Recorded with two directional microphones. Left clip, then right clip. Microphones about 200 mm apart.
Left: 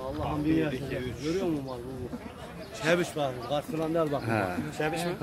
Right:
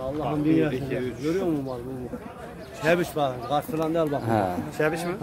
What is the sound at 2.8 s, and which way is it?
Speech, 35° right (ahead or behind).